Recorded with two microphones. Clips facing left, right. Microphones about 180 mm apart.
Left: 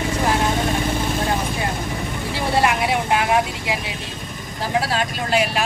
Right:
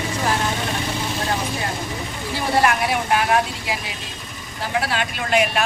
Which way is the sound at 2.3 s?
25° left (ahead or behind).